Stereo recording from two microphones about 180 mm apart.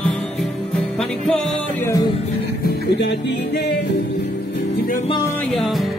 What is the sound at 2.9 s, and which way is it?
Music, 75° left (ahead or behind).